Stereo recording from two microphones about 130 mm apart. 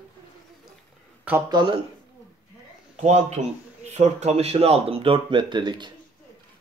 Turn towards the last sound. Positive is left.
turn(degrees=-35)  # may be behind; listen again after turning